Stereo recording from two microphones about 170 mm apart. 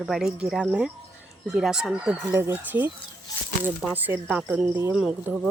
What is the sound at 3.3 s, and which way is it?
Speech, 20° left (ahead or behind).